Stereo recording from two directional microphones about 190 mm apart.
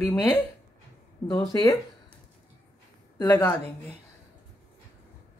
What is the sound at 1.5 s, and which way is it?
Speech, 15° left (ahead or behind).